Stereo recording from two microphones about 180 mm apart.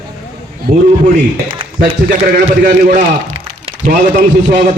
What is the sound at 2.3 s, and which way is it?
A man's voice, 45° right (ahead or behind).